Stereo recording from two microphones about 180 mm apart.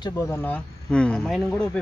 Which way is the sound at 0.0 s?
15° left (ahead or behind).